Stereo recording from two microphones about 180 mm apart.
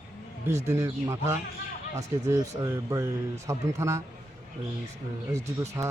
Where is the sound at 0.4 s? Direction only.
15° right (ahead or behind).